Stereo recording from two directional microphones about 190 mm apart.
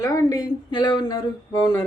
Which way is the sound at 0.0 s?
20° left (ahead or behind).